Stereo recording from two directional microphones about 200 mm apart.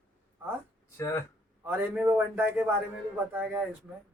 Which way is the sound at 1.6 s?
10° right (ahead or behind).